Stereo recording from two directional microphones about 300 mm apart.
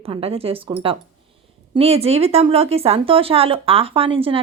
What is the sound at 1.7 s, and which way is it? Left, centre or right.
Speech, centre.